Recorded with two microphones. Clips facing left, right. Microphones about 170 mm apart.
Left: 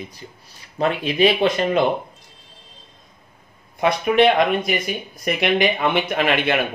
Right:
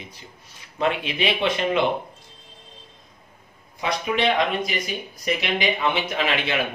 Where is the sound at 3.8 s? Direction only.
55° left (ahead or behind).